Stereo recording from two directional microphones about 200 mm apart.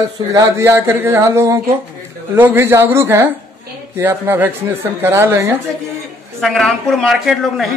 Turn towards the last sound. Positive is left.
turn(degrees=0)  # may be behind; listen again after turning